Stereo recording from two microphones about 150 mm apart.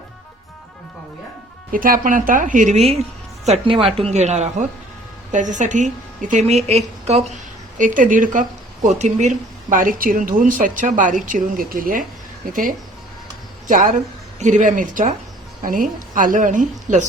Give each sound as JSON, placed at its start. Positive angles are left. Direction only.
{"t": 1.7, "sound": "a woman's voice", "side_deg": -70}
{"t": 13.7, "sound": "speech", "side_deg": -65}
{"t": 14.3, "sound": "a woman's voice", "side_deg": -55}